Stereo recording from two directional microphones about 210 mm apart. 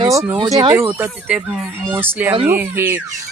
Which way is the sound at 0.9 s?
5° right (ahead or behind).